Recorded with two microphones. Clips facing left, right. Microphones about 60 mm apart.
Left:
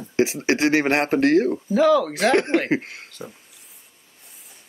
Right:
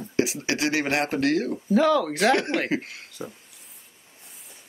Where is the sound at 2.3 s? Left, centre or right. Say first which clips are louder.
Left 7 dB; left.